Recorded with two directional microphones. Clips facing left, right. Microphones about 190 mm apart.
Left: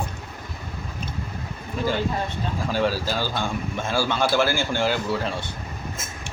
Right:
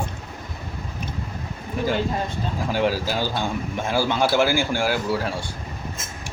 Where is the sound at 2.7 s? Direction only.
15° right (ahead or behind).